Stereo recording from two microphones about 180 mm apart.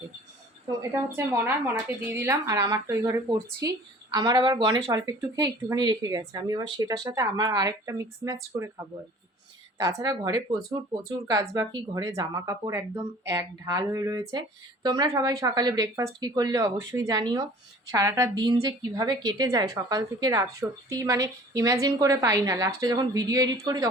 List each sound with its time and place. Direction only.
0.8 s speech: 15° right (ahead or behind)
9.7 s speech: 20° right (ahead or behind)